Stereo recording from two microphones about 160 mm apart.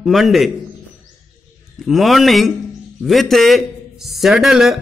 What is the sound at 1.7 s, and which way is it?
A man's voice, centre (ahead or behind).